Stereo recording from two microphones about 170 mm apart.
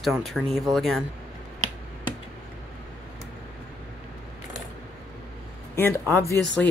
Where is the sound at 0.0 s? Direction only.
Centre (ahead or behind).